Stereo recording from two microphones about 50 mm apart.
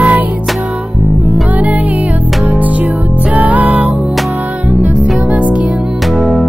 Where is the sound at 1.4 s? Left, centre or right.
Right.